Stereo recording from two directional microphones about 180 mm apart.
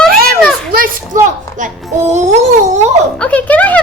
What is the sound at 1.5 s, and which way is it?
A child's voice, 45° right (ahead or behind).